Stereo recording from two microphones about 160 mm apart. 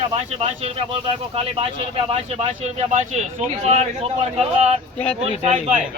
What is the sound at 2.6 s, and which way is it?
Speech, 50° right (ahead or behind).